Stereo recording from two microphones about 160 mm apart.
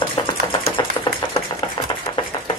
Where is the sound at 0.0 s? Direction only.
30° left (ahead or behind).